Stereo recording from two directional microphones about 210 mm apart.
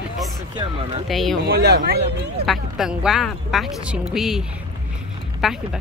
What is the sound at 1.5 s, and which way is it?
Speech, 50° right (ahead or behind).